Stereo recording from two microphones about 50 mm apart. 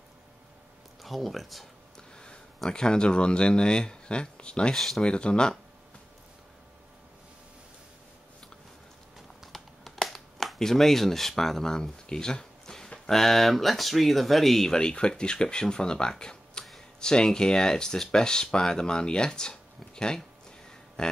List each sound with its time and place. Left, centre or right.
1.0 s speech: centre
2.0 s speech: centre
4.7 s speech: centre
5.0 s speech: centre
9.4 s a sound: centre
12.9 s speech: centre
14.8 s speech: centre
21.0 s a sound: centre